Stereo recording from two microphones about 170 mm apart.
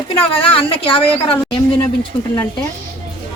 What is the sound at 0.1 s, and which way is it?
A woman's voice, 35° left (ahead or behind).